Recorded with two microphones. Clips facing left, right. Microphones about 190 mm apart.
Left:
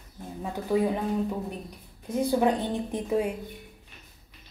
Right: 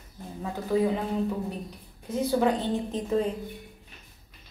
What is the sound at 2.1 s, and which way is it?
A woman's voice, 15° left (ahead or behind).